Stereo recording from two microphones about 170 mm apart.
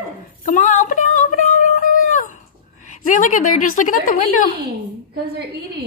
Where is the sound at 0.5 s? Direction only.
50° left (ahead or behind).